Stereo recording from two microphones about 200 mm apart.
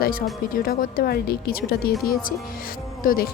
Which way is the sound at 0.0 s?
45° left (ahead or behind).